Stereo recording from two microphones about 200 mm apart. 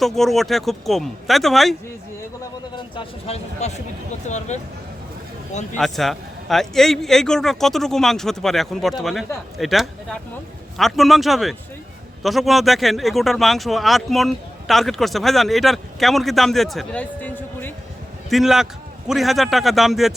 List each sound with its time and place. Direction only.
0.0 s speech: centre (ahead or behind)
2.7 s speech: 30° left (ahead or behind)
5.7 s speech: centre (ahead or behind)
18.3 s speech: centre (ahead or behind)